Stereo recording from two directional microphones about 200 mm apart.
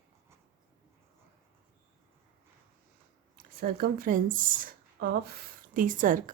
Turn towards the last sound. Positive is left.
turn(degrees=-40)  # may be behind; listen again after turning